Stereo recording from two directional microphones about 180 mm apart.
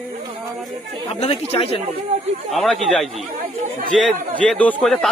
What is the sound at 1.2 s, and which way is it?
Speech, 35° left (ahead or behind).